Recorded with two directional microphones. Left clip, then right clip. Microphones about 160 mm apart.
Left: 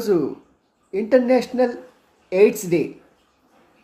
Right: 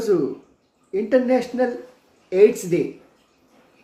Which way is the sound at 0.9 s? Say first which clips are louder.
Left 2 dB; 20° left (ahead or behind).